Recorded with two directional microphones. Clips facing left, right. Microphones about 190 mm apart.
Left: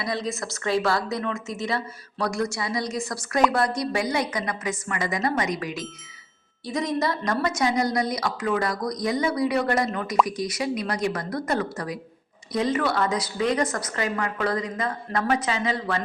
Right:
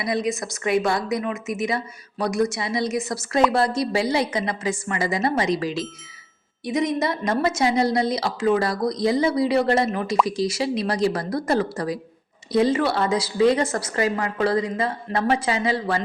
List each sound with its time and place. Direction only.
0.0 s a woman's voice: 20° right (ahead or behind)
6.7 s a woman's voice: 20° right (ahead or behind)